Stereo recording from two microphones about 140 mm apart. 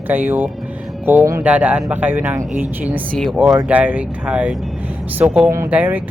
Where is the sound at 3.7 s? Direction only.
10° right (ahead or behind).